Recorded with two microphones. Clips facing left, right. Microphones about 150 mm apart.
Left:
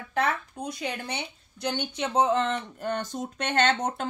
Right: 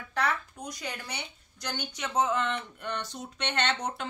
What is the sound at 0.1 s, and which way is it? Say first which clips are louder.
A woman's voice: left 3 dB; 25° left (ahead or behind).